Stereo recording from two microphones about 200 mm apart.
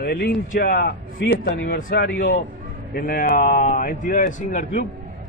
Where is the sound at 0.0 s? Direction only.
50° left (ahead or behind).